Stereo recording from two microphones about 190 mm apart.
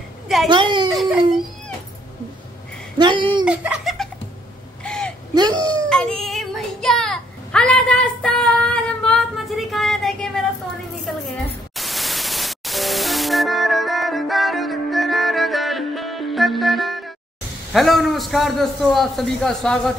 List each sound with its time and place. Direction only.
0.5 s speech: 25° right (ahead or behind)
3.0 s a sound: 25° right (ahead or behind)
3.4 s giggle: 5° right (ahead or behind)
4.8 s a sound: 5° left (ahead or behind)
5.3 s speech: 20° right (ahead or behind)
5.9 s child singing: 5° left (ahead or behind)
11.2 s static: centre (ahead or behind)
17.7 s a man's voice: centre (ahead or behind)